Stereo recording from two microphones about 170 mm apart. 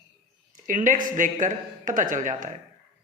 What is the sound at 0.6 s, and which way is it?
Speech, 50° right (ahead or behind).